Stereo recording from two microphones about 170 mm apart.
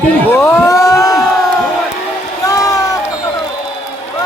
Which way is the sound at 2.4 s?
20° left (ahead or behind).